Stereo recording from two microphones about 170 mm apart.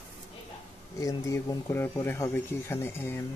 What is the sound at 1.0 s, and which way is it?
Speech, 20° left (ahead or behind).